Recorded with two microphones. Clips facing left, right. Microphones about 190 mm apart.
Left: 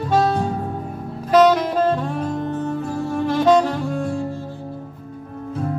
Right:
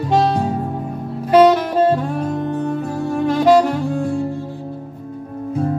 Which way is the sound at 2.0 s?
15° right (ahead or behind).